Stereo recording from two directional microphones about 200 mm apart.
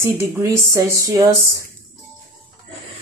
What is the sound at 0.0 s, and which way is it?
Speech, 15° right (ahead or behind).